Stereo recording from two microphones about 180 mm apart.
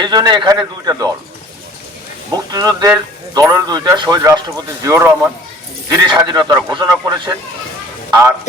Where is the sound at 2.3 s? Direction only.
20° right (ahead or behind).